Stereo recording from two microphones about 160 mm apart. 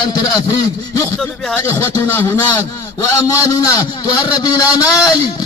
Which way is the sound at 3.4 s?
25° left (ahead or behind).